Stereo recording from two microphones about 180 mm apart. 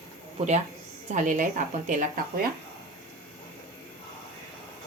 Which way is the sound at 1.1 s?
45° right (ahead or behind).